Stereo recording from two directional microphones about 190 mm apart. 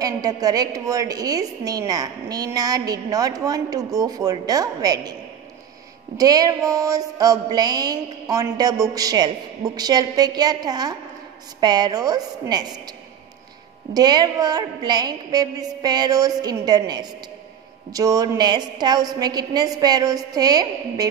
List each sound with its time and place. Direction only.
0.0 s a woman's voice: 20° right (ahead or behind)
6.1 s a woman's voice: 20° right (ahead or behind)
13.9 s a woman's voice: 20° right (ahead or behind)